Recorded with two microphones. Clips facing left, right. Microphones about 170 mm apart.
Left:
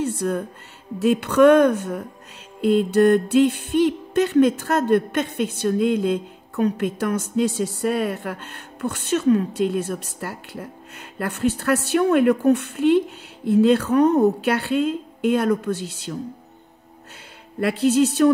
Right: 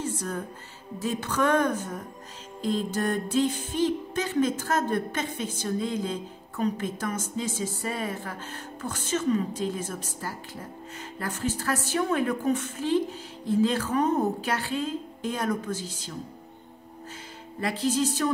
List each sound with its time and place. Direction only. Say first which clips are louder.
0.0 s music: left 8 dB; 65° left (ahead or behind)
17.6 s speech: left 8 dB; 65° left (ahead or behind)